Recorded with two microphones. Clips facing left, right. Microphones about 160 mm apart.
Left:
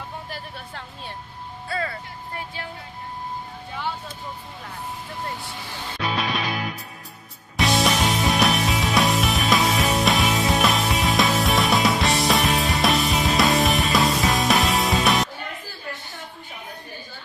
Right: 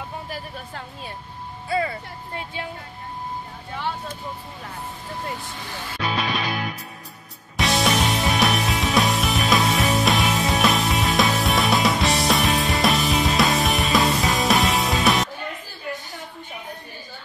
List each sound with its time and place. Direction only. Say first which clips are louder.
0.3 s a sound: right 2 dB; 5° right (ahead or behind)
1.7 s vehicle: right 5 dB; 20° right (ahead or behind)
5.9 s music: even; centre (ahead or behind)